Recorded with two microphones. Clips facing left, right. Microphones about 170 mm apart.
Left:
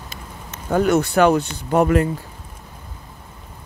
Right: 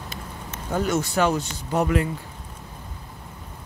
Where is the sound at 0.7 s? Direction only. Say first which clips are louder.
Left 7 dB; 60° left (ahead or behind).